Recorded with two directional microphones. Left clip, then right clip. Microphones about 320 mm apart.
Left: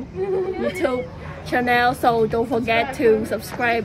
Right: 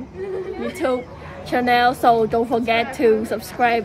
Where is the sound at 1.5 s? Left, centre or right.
Centre.